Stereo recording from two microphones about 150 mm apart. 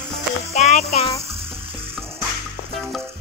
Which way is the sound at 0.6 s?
50° left (ahead or behind).